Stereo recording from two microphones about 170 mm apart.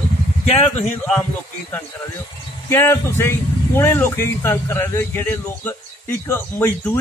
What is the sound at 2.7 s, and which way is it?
Speech, 15° left (ahead or behind).